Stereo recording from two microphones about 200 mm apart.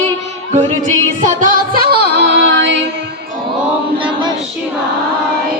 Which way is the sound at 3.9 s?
25° right (ahead or behind).